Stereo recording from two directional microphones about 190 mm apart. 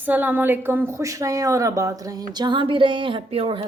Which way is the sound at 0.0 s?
10° right (ahead or behind).